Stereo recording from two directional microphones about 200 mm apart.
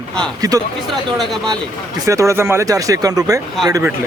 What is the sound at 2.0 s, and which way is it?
A man's voice, 15° right (ahead or behind).